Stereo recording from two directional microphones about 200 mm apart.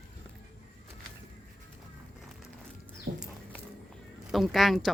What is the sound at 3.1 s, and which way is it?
Music, 30° right (ahead or behind).